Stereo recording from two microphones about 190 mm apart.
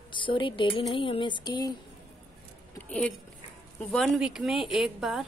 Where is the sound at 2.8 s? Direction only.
5° left (ahead or behind).